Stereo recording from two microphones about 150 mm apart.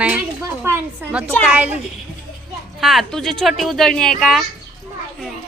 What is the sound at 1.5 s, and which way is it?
Speech, 10° right (ahead or behind).